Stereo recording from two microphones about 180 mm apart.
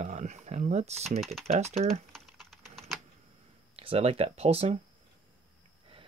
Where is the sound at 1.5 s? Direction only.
35° right (ahead or behind).